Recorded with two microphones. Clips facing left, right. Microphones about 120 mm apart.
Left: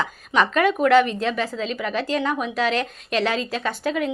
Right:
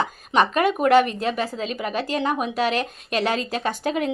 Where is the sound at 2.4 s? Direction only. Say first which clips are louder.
Even; 15° right (ahead or behind).